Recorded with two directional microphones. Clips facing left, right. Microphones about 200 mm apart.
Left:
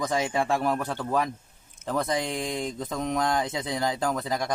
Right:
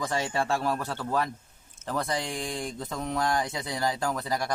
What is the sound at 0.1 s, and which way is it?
Speech, 15° left (ahead or behind).